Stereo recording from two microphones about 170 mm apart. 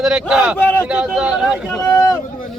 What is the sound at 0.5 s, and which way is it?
Speech, 10° left (ahead or behind).